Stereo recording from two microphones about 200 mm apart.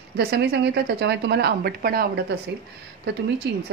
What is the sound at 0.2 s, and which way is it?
Speech, 55° right (ahead or behind).